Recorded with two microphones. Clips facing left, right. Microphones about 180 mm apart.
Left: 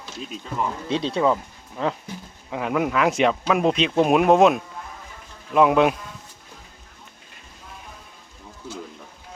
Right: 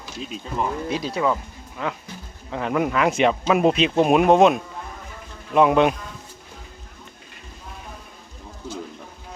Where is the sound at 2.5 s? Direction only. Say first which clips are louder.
Right 1 dB; 5° left (ahead or behind).